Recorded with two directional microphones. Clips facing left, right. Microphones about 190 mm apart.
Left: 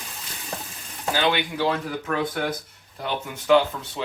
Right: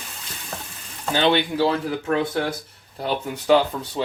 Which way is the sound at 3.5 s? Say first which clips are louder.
Right 1 dB; 35° right (ahead or behind).